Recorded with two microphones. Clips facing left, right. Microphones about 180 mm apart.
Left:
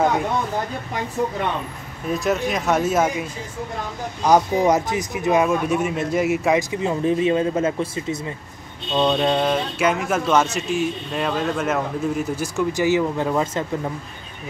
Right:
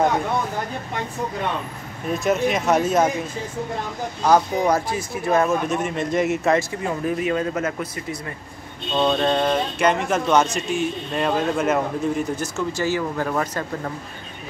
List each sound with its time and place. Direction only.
2.1 s speech: centre (ahead or behind)
4.2 s speech: 20° left (ahead or behind)
6.8 s speech: 25° left (ahead or behind)
9.1 s speech: 10° left (ahead or behind)